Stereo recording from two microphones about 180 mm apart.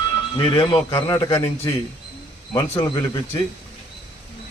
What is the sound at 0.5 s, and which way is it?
A man's voice, 30° left (ahead or behind).